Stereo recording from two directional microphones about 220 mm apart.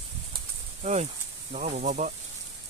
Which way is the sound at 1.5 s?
35° right (ahead or behind).